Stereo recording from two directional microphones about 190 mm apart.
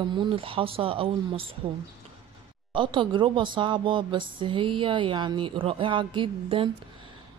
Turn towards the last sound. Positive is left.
turn(degrees=-25)  # may be behind; listen again after turning